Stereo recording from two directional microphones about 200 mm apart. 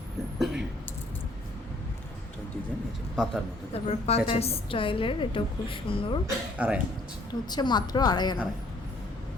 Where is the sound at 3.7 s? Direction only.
30° left (ahead or behind).